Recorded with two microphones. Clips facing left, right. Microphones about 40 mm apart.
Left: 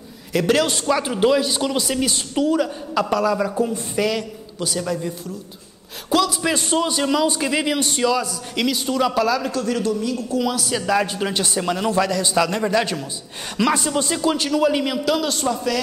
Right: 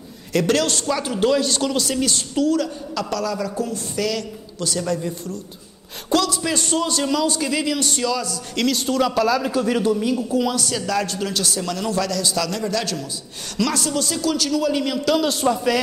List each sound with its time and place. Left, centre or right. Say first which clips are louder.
0.3 s a man's voice: left 1 dB; centre
10.5 s a man's voice: left 1 dB; centre
10.8 s a man's voice: left 3 dB; centre
15.1 s a man's voice: right 2 dB; centre
15.4 s a man's voice: right 3 dB; centre